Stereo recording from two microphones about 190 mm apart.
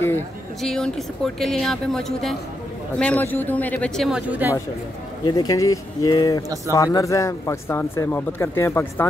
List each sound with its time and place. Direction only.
0.6 s speech: 5° left (ahead or behind)
5.2 s speech: 20° left (ahead or behind)